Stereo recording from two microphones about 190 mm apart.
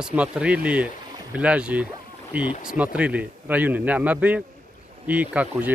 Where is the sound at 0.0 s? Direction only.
5° right (ahead or behind).